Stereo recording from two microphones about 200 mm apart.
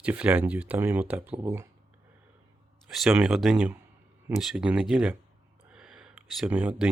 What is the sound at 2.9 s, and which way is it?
Speech, centre (ahead or behind).